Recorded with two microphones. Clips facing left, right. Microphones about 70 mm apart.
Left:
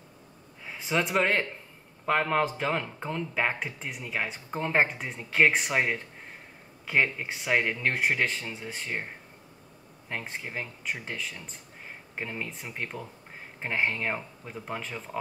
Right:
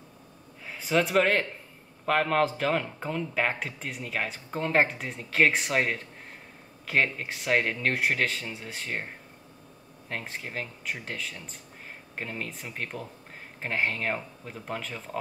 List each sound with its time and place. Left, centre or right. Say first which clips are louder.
0.7 s speech: right 3 dB; centre
10.3 s speech: even; centre